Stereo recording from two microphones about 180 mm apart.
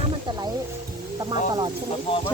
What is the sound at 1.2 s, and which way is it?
Speech, 25° right (ahead or behind).